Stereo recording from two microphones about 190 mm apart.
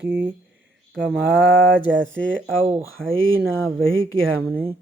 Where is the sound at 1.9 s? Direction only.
80° right.